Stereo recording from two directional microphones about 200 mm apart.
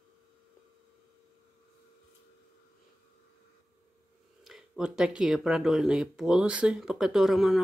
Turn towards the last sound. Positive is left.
turn(degrees=0)  # may be behind; listen again after turning